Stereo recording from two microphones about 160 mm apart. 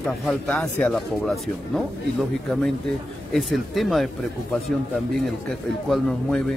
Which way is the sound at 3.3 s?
Centre (ahead or behind).